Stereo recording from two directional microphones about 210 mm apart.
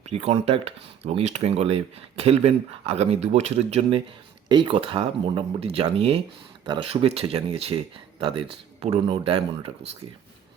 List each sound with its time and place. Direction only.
0.0 s speech: 30° right (ahead or behind)